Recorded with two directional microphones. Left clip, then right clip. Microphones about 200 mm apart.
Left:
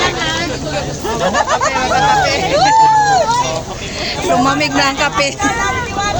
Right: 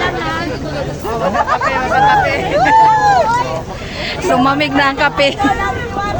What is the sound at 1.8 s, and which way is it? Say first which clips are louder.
Speech: right 2 dB; 15° left (ahead or behind).